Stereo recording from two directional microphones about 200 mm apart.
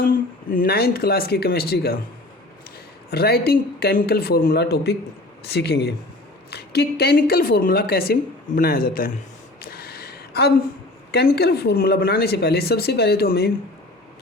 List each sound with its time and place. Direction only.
0.5 s a woman's voice: 50° left (ahead or behind)
3.1 s a woman's voice: 50° left (ahead or behind)
9.6 s a sound: 50° left (ahead or behind)
11.1 s a woman's voice: 55° left (ahead or behind)